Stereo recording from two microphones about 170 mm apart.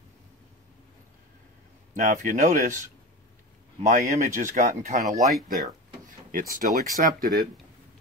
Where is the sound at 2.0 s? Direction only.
50° right (ahead or behind).